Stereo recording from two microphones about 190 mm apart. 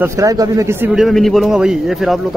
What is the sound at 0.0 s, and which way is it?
A man's voice, 15° right (ahead or behind).